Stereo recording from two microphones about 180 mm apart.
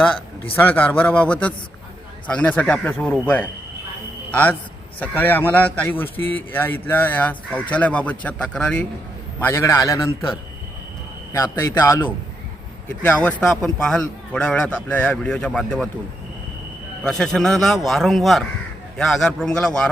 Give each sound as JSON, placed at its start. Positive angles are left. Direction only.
{"t": 0.5, "sound": "a man's voice", "side_deg": 10}
{"t": 13.0, "sound": "speech", "side_deg": 5}
{"t": 17.0, "sound": "speech", "side_deg": 5}